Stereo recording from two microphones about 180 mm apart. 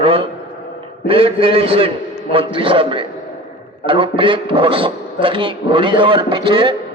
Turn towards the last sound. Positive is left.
turn(degrees=-30)  # may be behind; listen again after turning